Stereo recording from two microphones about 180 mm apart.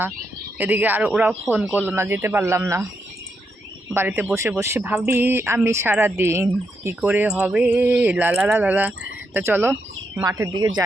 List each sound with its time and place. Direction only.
0.6 s speech: 10° right (ahead or behind)
3.9 s speech: 10° right (ahead or behind)